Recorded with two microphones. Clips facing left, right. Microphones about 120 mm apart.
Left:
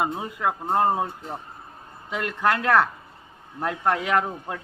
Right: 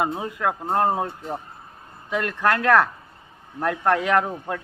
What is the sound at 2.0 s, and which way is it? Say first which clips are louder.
A man's voice: right 2 dB; 15° left (ahead or behind).